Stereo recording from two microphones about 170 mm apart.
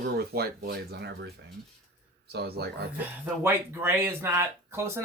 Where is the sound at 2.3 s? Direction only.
70° right (ahead or behind).